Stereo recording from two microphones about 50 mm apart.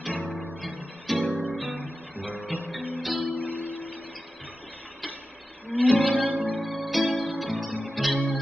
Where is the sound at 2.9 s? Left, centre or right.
Centre.